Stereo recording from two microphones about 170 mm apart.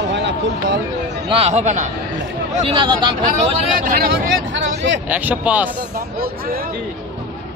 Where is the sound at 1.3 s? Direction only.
40° right (ahead or behind).